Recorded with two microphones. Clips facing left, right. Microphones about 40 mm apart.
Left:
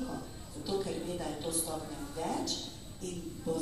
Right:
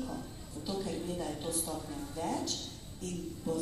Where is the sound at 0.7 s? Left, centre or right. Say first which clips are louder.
Left 2 dB; centre.